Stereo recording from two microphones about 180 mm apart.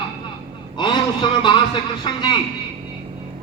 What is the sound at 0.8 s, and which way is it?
A man's voice, 25° left (ahead or behind).